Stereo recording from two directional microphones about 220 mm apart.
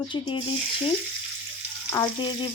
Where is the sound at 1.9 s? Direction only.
20° left (ahead or behind).